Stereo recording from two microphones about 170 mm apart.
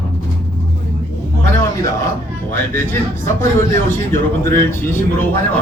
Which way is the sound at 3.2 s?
15° left (ahead or behind).